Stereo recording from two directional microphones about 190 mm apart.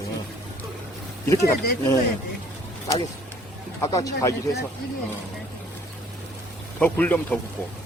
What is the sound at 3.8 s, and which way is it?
Speech, 20° left (ahead or behind).